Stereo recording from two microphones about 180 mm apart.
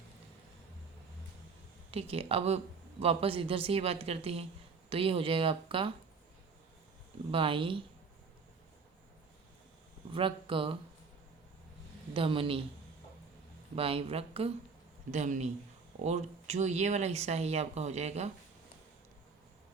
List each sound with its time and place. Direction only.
1.9 s speech: 35° right (ahead or behind)
7.3 s speech: 30° right (ahead or behind)
10.1 s speech: 30° right (ahead or behind)
12.1 s speech: 30° right (ahead or behind)
13.7 s speech: 30° right (ahead or behind)